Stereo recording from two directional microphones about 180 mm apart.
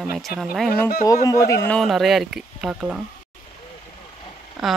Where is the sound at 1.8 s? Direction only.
Centre (ahead or behind).